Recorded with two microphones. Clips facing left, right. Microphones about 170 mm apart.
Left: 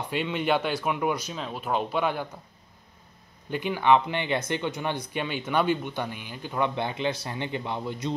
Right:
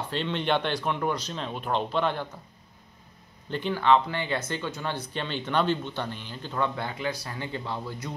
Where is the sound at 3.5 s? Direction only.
15° left (ahead or behind).